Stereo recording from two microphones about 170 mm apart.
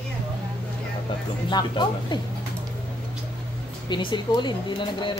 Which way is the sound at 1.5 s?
25° left (ahead or behind).